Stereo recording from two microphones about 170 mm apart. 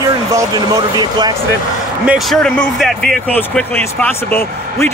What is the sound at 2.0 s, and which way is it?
Speech, 5° right (ahead or behind).